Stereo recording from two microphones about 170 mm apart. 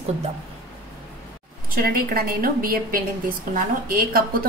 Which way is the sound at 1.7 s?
60° right (ahead or behind).